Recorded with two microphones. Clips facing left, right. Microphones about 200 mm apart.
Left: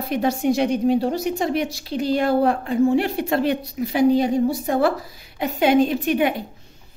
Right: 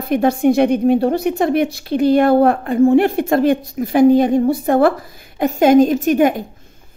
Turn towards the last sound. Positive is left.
turn(degrees=-45)  # may be behind; listen again after turning